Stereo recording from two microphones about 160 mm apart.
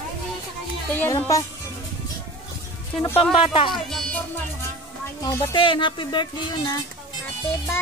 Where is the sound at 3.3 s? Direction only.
35° left (ahead or behind).